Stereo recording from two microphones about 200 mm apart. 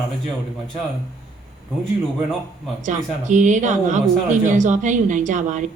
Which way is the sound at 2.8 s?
40° right (ahead or behind).